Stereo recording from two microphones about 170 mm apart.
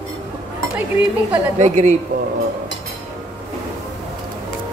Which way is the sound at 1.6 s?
45° right (ahead or behind).